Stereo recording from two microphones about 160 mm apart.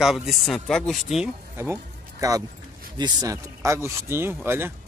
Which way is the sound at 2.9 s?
25° right (ahead or behind).